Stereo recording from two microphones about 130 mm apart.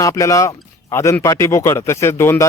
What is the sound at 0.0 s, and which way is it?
A man's voice, 25° left (ahead or behind).